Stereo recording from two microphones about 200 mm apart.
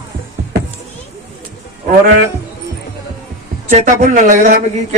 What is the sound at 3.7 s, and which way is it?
Speech, 40° right (ahead or behind).